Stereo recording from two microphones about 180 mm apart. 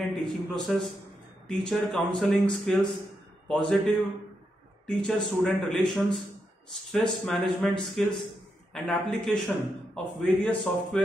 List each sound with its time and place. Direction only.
0.1 s a man's voice: centre (ahead or behind)